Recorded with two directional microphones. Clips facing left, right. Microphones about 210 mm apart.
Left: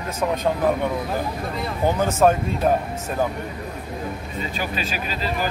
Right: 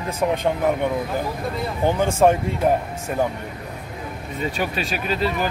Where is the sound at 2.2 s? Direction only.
20° right (ahead or behind).